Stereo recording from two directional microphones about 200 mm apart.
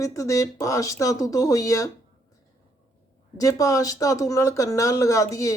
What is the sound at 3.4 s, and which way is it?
Speech, 15° left (ahead or behind).